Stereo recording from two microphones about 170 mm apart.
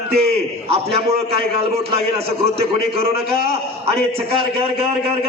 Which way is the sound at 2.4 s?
35° right (ahead or behind).